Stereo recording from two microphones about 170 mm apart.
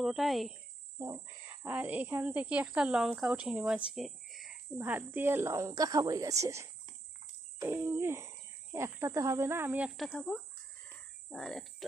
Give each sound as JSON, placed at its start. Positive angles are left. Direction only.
{"t": 0.0, "sound": "speech", "side_deg": 0}
{"t": 3.9, "sound": "a sound", "side_deg": 0}
{"t": 4.7, "sound": "speech", "side_deg": -10}
{"t": 10.0, "sound": "speech", "side_deg": 0}
{"t": 11.3, "sound": "cricket", "side_deg": 0}